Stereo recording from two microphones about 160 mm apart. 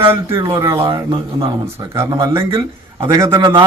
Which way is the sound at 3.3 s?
30° right (ahead or behind).